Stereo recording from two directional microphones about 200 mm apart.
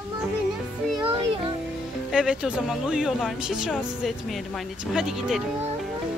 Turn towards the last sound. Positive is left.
turn(degrees=0)  # may be behind; listen again after turning